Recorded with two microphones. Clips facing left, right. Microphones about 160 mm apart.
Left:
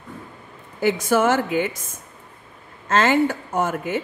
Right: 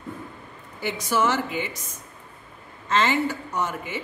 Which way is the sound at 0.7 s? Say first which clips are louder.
Left 6 dB; 50° left (ahead or behind).